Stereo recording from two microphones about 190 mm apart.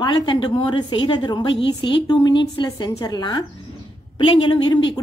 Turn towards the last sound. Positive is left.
turn(degrees=25)  # may be behind; listen again after turning